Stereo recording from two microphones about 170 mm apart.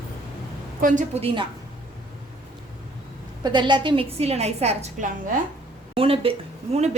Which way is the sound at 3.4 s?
25° right (ahead or behind).